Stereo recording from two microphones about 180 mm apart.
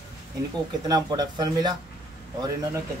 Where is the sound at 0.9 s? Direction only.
20° right (ahead or behind).